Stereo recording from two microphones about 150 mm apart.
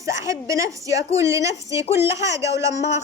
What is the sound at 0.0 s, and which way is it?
A woman's voice, 20° right (ahead or behind).